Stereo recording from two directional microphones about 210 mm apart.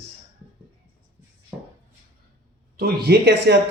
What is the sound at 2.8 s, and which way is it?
Speech, 50° right (ahead or behind).